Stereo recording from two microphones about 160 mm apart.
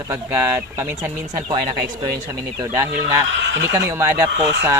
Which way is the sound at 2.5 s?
20° right (ahead or behind).